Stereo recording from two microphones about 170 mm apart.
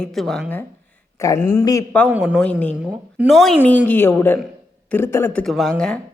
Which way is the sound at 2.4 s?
10° left (ahead or behind).